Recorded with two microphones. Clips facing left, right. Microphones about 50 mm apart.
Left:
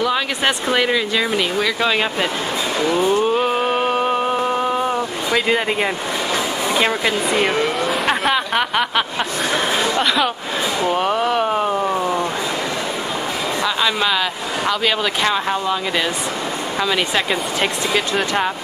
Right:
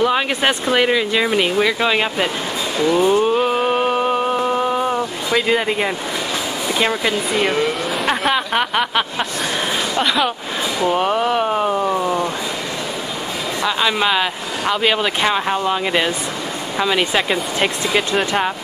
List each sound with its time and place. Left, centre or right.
0.0 s speech: centre
3.1 s a sound: centre
6.7 s speech: centre
13.7 s speech: centre